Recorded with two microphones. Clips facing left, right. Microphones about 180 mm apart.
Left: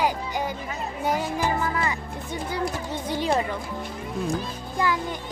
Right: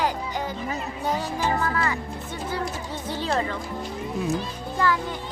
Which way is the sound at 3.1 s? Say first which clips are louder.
Left 2 dB; 15° left (ahead or behind).